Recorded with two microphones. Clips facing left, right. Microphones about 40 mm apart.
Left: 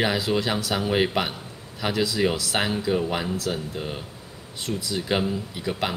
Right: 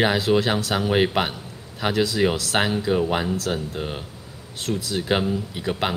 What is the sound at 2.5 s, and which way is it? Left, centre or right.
Speech, right.